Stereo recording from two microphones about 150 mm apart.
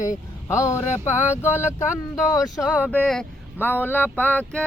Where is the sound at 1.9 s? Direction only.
5° right (ahead or behind).